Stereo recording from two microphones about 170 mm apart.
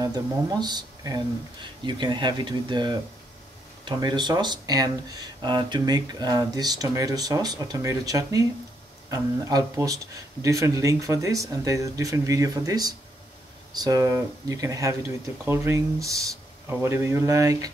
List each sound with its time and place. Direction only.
0.0 s speech: 25° right (ahead or behind)